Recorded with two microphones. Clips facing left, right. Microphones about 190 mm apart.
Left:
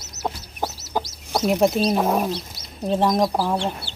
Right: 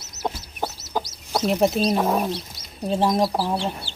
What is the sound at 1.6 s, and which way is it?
Speech, centre (ahead or behind).